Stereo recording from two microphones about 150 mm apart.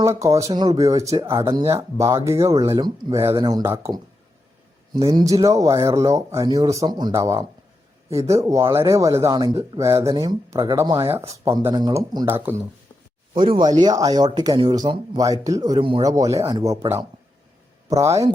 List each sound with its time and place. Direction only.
0.0 s speech: 20° right (ahead or behind)
5.0 s speech: 25° right (ahead or behind)
12.2 s speech: 15° right (ahead or behind)
13.3 s speech: 30° right (ahead or behind)